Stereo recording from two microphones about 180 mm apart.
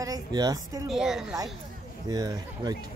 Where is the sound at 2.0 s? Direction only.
20° right (ahead or behind).